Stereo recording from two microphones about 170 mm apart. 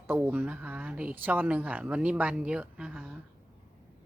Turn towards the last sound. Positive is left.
turn(degrees=-5)  # may be behind; listen again after turning